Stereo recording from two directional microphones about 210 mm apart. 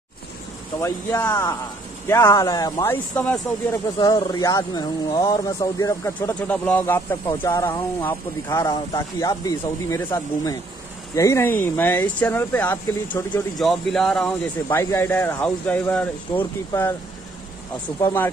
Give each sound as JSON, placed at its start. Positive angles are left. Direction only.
{"t": 0.7, "sound": "speech", "side_deg": 15}
{"t": 4.0, "sound": "speech", "side_deg": 20}
{"t": 18.0, "sound": "speech", "side_deg": 10}